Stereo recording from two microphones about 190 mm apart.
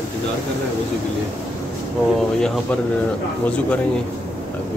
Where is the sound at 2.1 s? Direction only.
5° left (ahead or behind).